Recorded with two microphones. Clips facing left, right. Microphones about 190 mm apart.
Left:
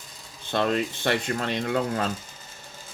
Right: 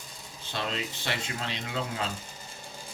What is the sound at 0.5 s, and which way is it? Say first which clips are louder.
Speech: left 9 dB; 55° left (ahead or behind).